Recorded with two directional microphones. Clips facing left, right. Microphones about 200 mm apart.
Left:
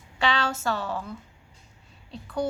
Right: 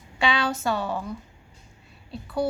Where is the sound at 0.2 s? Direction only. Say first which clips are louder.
Right 2 dB; 15° right (ahead or behind).